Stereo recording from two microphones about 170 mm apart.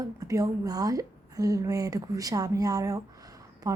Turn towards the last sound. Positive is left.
turn(degrees=-20)  # may be behind; listen again after turning